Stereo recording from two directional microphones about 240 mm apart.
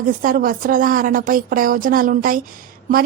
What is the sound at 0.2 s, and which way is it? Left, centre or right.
A woman's voice, right.